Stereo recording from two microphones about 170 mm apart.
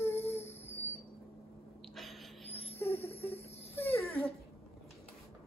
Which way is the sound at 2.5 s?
35° left (ahead or behind).